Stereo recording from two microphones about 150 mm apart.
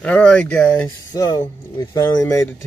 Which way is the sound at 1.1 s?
25° left (ahead or behind).